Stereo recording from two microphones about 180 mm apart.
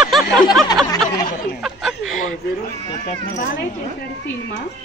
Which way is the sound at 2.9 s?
30° left (ahead or behind).